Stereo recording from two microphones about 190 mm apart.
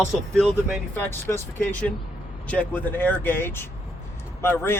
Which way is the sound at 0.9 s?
10° left (ahead or behind).